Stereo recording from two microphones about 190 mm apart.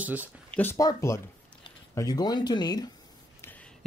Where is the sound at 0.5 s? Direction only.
15° left (ahead or behind).